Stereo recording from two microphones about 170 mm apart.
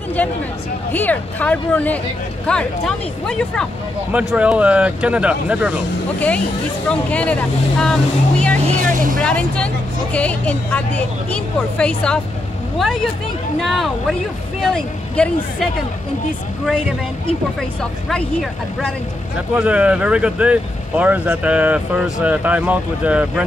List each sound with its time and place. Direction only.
0.9 s speech: 10° left (ahead or behind); by 5.8 s 5° right (ahead or behind)
6.9 s speech: 5° left (ahead or behind)
8.9 s vehicle: 50° right (ahead or behind)
9.2 s speech: 5° left (ahead or behind)
18.1 s speech: 5° left (ahead or behind)
19.5 s speech: 5° right (ahead or behind)